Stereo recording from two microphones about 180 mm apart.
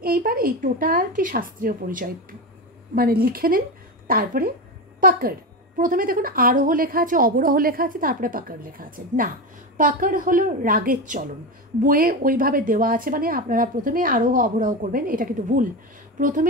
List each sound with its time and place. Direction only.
0.0 s speech: 55° right (ahead or behind)